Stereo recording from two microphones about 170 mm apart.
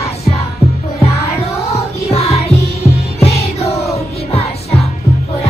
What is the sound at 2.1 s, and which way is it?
Music, 35° left (ahead or behind).